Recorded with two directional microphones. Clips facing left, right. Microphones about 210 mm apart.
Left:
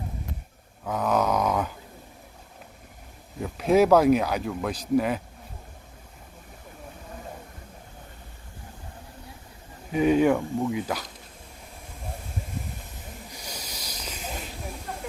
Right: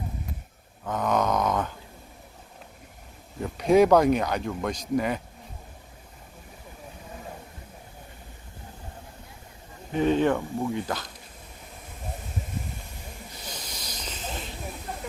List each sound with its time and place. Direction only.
0.9 s a sound: 10° left (ahead or behind)
3.4 s speech: centre (ahead or behind)
9.9 s speech: 10° left (ahead or behind)
13.3 s snake: 10° left (ahead or behind)